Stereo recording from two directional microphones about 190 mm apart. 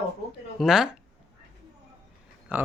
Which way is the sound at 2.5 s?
10° right (ahead or behind).